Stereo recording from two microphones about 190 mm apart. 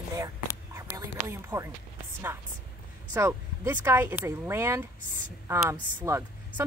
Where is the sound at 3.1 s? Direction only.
15° right (ahead or behind).